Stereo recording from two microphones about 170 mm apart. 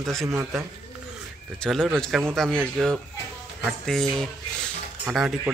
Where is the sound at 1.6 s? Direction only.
Centre (ahead or behind).